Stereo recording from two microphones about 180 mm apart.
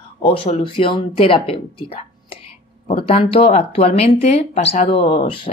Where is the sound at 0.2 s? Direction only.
30° left (ahead or behind).